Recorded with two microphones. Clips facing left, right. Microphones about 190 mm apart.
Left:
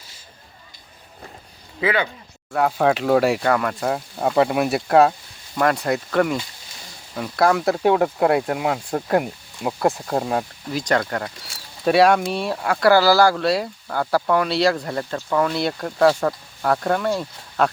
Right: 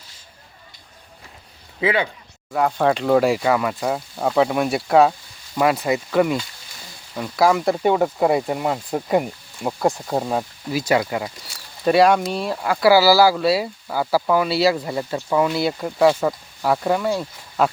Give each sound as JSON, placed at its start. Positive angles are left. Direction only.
{"t": 1.8, "sound": "speech", "side_deg": -25}
{"t": 2.5, "sound": "speech", "side_deg": 0}